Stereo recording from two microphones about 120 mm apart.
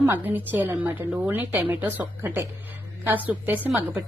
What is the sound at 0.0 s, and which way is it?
A woman's voice, 15° right (ahead or behind).